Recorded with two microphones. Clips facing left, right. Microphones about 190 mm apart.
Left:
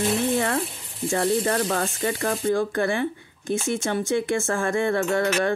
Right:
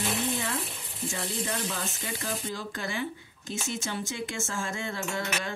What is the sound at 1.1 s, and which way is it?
Speech, 60° left (ahead or behind).